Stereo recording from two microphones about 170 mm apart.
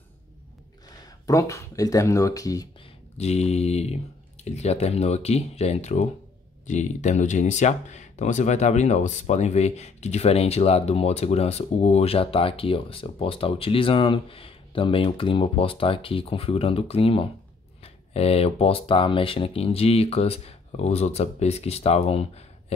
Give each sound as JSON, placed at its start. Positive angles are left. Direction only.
{"t": 1.0, "sound": "speech", "side_deg": 20}
{"t": 3.2, "sound": "speech", "side_deg": 40}